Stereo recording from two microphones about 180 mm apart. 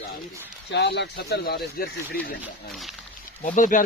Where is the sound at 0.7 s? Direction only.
70° left (ahead or behind).